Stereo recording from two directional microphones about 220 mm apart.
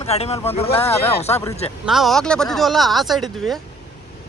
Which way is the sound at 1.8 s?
Centre (ahead or behind).